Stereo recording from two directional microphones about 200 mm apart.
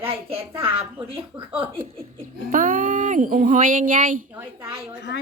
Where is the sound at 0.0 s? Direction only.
30° right (ahead or behind).